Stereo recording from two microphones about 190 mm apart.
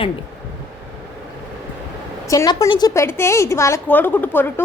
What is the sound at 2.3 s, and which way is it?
A woman's voice, 15° left (ahead or behind).